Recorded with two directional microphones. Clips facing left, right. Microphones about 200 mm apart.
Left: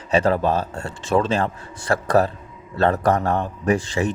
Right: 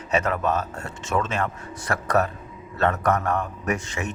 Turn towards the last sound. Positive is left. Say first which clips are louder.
# left 7 dB
turn(degrees=30)  # may be behind; listen again after turning